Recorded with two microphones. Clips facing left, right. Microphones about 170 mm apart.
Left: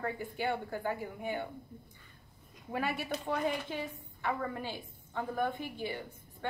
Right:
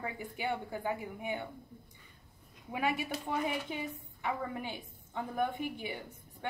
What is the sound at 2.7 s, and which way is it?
Speech, 15° right (ahead or behind).